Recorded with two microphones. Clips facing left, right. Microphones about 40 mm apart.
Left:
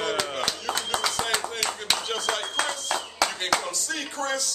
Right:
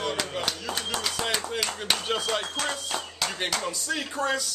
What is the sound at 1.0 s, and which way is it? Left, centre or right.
Speech, centre.